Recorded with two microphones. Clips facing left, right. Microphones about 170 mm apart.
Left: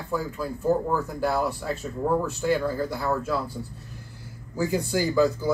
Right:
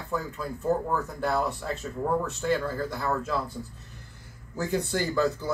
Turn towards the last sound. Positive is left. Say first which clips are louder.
# left 4 dB
turn(degrees=10)  # may be behind; listen again after turning